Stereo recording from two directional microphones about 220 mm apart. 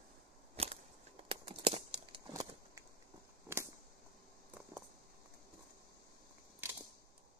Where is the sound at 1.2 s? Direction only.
25° right (ahead or behind).